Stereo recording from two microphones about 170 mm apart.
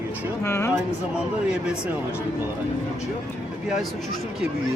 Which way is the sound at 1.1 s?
5° right (ahead or behind).